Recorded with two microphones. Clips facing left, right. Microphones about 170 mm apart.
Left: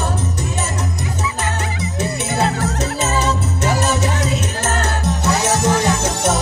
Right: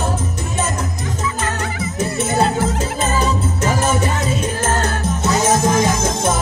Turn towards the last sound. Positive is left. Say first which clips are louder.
# even
turn(degrees=70)  # may be behind; listen again after turning